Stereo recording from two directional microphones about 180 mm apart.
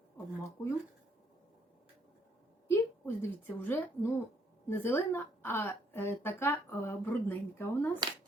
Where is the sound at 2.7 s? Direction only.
15° left (ahead or behind).